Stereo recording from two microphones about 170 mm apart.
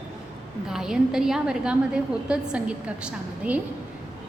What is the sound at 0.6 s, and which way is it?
A woman's voice, 5° right (ahead or behind).